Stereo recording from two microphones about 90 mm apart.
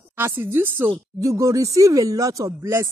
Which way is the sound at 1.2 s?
40° right (ahead or behind).